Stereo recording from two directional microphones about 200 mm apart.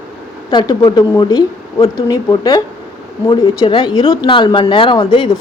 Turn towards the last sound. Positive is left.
turn(degrees=20)  # may be behind; listen again after turning